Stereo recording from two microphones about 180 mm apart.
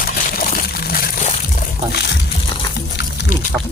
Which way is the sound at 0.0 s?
55° left (ahead or behind).